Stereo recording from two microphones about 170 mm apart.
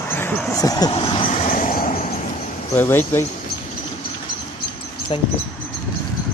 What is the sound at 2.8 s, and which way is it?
Speech, 15° left (ahead or behind).